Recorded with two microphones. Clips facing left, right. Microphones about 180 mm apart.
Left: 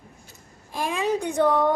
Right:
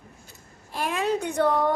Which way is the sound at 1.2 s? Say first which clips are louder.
Left 2 dB; 10° left (ahead or behind).